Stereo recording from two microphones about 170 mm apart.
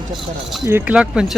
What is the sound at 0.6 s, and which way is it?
Speech, 10° right (ahead or behind).